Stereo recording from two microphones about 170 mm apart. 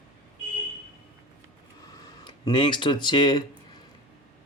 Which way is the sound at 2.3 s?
30° left (ahead or behind).